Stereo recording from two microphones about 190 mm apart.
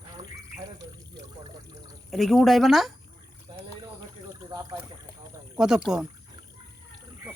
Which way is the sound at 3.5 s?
20° right (ahead or behind).